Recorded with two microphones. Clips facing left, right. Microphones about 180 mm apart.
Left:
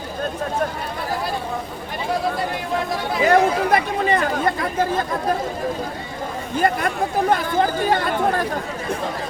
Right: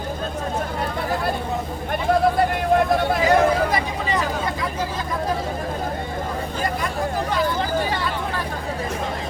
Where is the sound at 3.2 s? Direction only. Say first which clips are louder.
Left 4 dB; 60° left (ahead or behind).